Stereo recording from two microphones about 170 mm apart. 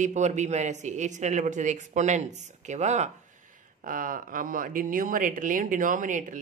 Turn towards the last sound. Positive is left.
turn(degrees=-50)  # may be behind; listen again after turning